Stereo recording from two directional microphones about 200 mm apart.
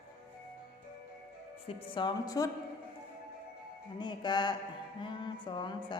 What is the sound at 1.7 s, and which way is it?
Speech, 25° left (ahead or behind).